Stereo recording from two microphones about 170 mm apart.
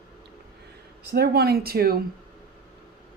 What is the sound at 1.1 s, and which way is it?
Speech, 70° right (ahead or behind).